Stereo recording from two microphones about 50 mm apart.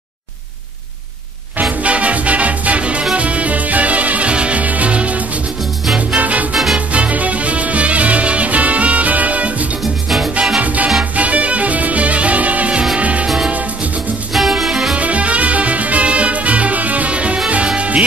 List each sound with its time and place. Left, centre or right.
1.6 s music: right
6.5 s music: centre
6.9 s music: right
10.0 s music: centre
10.6 s music: right
14.5 s music: centre
15.0 s music: right